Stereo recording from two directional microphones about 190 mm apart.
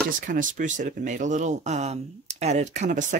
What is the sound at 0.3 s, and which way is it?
Speech, 45° right (ahead or behind).